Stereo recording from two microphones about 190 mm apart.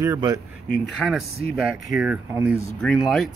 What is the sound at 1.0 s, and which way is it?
Speech, centre (ahead or behind).